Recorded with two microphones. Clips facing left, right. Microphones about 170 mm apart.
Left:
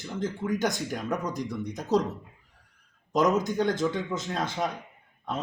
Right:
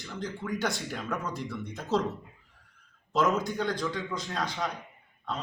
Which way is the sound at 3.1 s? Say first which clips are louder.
Left 3 dB; 15° left (ahead or behind).